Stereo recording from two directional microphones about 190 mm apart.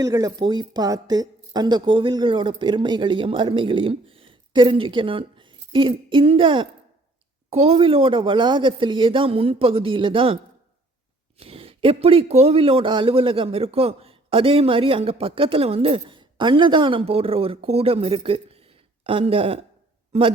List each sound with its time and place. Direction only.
0.0 s a man's voice: 20° right (ahead or behind)
11.3 s a man's voice: 30° right (ahead or behind)